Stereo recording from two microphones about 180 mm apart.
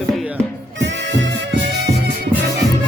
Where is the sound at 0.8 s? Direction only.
90° right.